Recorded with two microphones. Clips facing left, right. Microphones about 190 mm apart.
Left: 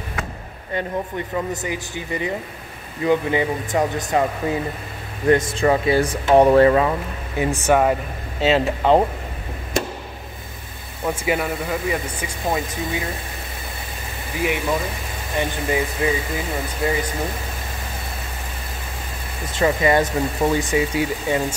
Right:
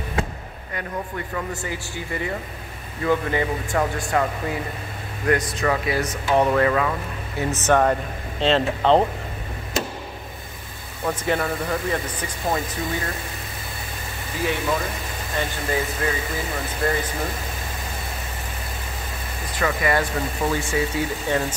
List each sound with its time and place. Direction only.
0.7 s speech: 20° left (ahead or behind)
7.3 s speech: 10° left (ahead or behind)
11.1 s speech: 10° left (ahead or behind)
14.4 s speech: 15° left (ahead or behind)
19.5 s speech: 25° left (ahead or behind)